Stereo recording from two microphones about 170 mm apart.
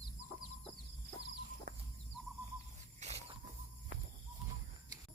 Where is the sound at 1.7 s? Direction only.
55° right (ahead or behind).